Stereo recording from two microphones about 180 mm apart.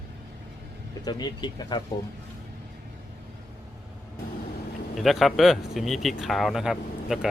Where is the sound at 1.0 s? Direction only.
25° left (ahead or behind).